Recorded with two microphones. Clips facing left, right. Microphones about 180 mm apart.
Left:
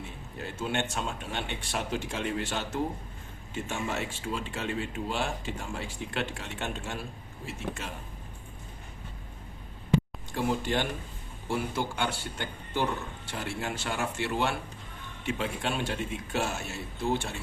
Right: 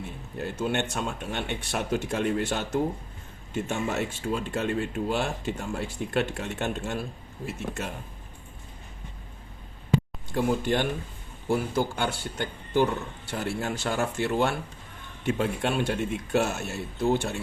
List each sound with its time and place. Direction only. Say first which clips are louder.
0.3 s speech: right 4 dB; 50° right (ahead or behind)
10.3 s speech: right 4 dB; 50° right (ahead or behind)